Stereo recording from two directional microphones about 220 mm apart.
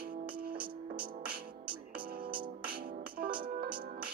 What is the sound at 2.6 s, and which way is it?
Music, 45° right (ahead or behind).